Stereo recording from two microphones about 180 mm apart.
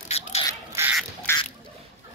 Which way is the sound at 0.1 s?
35° left (ahead or behind).